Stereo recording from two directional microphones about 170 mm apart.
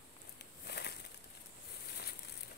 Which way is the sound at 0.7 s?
70° left (ahead or behind).